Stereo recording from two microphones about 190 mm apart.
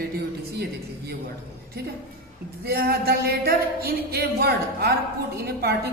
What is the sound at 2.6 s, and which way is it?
Speech, 55° right (ahead or behind).